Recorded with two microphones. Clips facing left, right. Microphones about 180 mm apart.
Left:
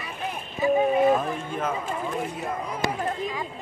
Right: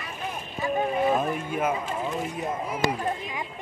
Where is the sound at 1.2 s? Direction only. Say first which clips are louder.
Right 2 dB; 10° right (ahead or behind).